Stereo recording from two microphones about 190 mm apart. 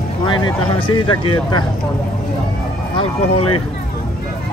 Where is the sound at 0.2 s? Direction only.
20° left (ahead or behind).